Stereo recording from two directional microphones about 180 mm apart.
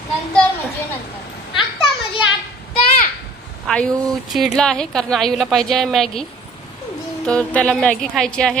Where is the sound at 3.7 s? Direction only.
5° left (ahead or behind).